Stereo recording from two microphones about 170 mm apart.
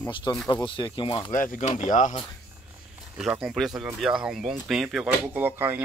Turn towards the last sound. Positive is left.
turn(degrees=-10)  # may be behind; listen again after turning